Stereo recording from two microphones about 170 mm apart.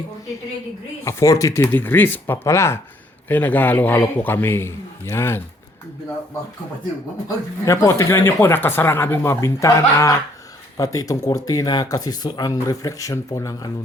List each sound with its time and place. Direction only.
1.0 s speech: 20° left (ahead or behind)
7.3 s speech: 20° left (ahead or behind)